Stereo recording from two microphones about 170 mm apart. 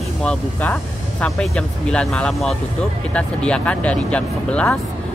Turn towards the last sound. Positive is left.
turn(degrees=5)  # may be behind; listen again after turning